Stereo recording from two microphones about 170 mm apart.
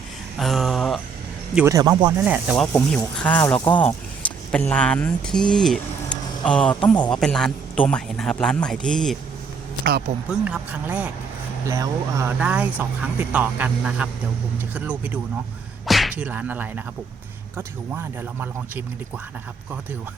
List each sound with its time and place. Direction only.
0.3 s a sound: centre (ahead or behind)
1.5 s speech: 15° right (ahead or behind)
2.1 s speech: 10° right (ahead or behind)
3.2 s a man's voice: 10° left (ahead or behind)
10.4 s speech: 10° right (ahead or behind)
12.4 s speech: 5° right (ahead or behind)
15.9 s whip: centre (ahead or behind)
17.6 s speech: 15° right (ahead or behind)